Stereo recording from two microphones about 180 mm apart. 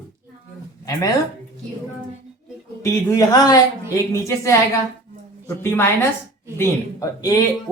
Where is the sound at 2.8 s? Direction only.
15° left (ahead or behind).